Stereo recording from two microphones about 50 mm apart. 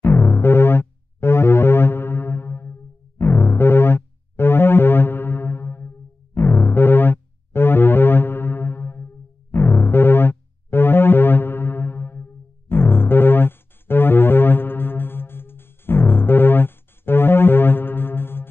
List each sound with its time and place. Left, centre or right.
0.0 s music: left